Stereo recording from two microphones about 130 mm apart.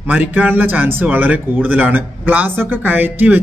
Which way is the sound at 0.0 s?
10° right (ahead or behind).